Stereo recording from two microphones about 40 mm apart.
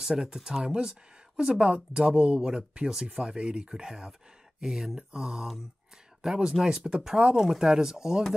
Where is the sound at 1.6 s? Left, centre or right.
Right.